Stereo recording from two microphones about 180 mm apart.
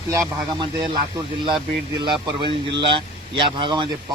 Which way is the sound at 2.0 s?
25° right (ahead or behind).